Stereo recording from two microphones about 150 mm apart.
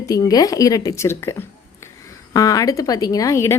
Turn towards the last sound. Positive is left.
turn(degrees=20)  # may be behind; listen again after turning